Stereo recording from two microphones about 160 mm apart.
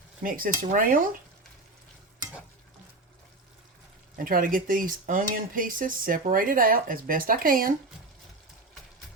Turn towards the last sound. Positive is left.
turn(degrees=-65)  # may be behind; listen again after turning